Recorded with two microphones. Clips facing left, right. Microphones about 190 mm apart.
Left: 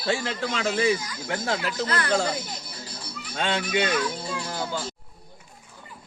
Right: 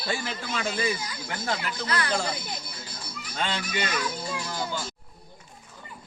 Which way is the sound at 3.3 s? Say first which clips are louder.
Left 5 dB; 70° left (ahead or behind).